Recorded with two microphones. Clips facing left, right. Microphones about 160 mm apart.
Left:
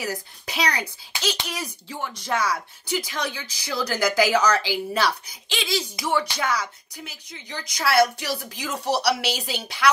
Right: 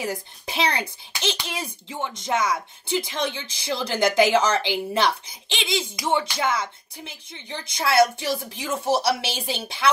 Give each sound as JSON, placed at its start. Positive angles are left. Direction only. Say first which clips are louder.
{"t": 0.0, "sound": "speech", "louder": "right 1 dB", "side_deg": -25}